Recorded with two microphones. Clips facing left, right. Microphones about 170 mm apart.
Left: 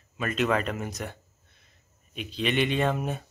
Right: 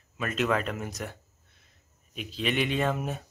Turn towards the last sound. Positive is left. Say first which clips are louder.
# left 2 dB
turn(degrees=0)  # may be behind; listen again after turning